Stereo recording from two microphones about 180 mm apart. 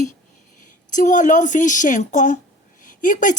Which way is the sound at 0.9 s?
45° left (ahead or behind).